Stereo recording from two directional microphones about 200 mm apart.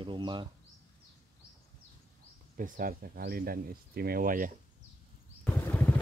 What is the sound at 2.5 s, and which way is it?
Speech, 45° right (ahead or behind).